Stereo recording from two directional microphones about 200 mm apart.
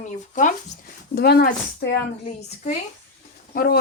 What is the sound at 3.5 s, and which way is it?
Speech, 45° left (ahead or behind).